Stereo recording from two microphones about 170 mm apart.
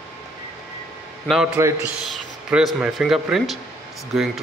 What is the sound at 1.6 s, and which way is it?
Speech, 15° right (ahead or behind).